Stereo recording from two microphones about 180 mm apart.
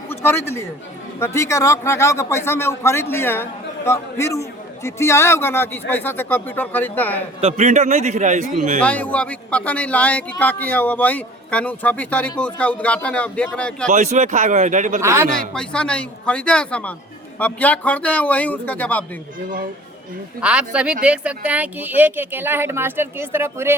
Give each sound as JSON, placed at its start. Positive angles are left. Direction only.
{"t": 0.1, "sound": "speech", "side_deg": 10}
{"t": 7.4, "sound": "a man's voice", "side_deg": -40}
{"t": 8.8, "sound": "speech", "side_deg": 5}
{"t": 13.8, "sound": "a man's voice", "side_deg": -40}
{"t": 15.0, "sound": "speech", "side_deg": -15}
{"t": 15.5, "sound": "speech", "side_deg": 5}
{"t": 20.4, "sound": "speech", "side_deg": -5}